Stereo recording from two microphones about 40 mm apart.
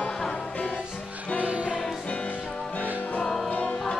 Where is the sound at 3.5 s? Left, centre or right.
Left.